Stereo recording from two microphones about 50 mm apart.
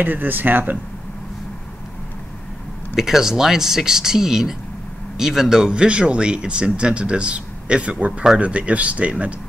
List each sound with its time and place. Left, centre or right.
0.0 s speech: right
3.0 s speech: centre; by 9.1 s right